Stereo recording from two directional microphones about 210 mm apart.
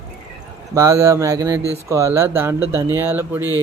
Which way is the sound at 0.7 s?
15° right (ahead or behind).